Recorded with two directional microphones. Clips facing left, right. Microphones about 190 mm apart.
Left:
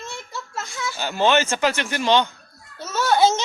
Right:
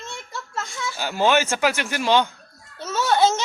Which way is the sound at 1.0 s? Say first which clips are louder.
Even; 10° right (ahead or behind).